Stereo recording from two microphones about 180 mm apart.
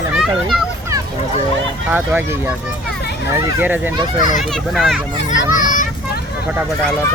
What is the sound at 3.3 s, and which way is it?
Speech, 10° right (ahead or behind).